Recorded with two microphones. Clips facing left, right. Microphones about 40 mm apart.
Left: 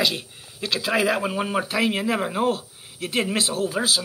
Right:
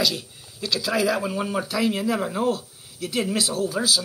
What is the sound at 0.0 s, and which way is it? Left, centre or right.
Speech, left.